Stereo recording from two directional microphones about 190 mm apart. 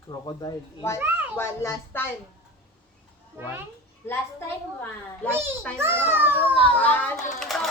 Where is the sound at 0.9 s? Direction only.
10° right (ahead or behind).